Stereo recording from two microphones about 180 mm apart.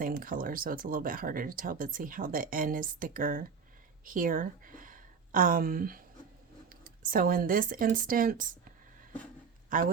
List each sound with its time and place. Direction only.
0.0 s speech: 50° right (ahead or behind)
9.6 s speech: 50° right (ahead or behind)